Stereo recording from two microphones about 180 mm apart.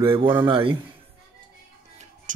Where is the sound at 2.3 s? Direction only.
45° right (ahead or behind).